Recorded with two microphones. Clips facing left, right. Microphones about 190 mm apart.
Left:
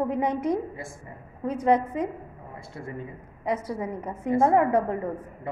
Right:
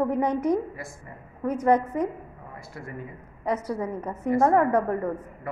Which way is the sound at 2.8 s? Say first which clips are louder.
Left 2 dB; 25° left (ahead or behind).